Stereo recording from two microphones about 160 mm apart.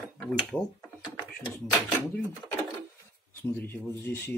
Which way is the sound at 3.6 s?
10° left (ahead or behind).